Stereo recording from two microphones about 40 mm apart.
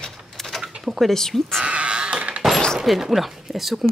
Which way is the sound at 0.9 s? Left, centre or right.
Centre.